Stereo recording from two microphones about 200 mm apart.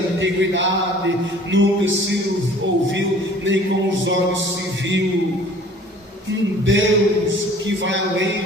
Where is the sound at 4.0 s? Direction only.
65° right (ahead or behind).